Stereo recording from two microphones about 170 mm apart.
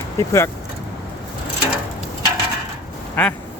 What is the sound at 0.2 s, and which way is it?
Speech, 15° left (ahead or behind).